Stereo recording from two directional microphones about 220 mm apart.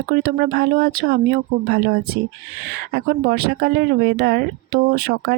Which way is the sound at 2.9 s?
45° right (ahead or behind).